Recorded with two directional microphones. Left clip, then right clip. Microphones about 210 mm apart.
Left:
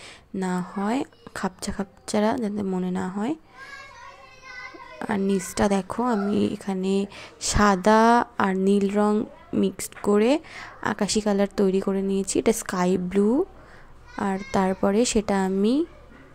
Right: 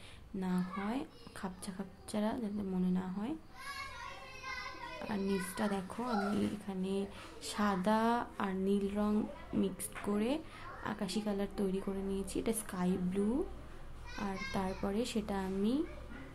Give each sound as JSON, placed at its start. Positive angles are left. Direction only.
{"t": 0.4, "sound": "speech", "side_deg": 35}
{"t": 4.9, "sound": "speech", "side_deg": 30}